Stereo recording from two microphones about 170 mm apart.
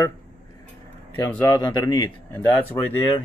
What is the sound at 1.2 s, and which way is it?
Speech, 15° left (ahead or behind).